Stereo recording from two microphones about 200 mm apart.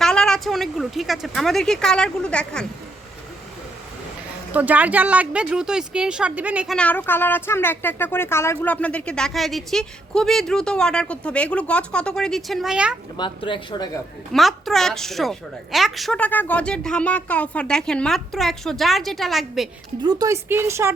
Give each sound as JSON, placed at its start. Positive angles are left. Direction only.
{"t": 0.0, "sound": "speech", "side_deg": 5}
{"t": 4.5, "sound": "speech", "side_deg": -10}
{"t": 6.7, "sound": "speech", "side_deg": 10}
{"t": 13.1, "sound": "speech", "side_deg": 25}
{"t": 14.3, "sound": "speech", "side_deg": 0}
{"t": 20.0, "sound": "speech", "side_deg": -20}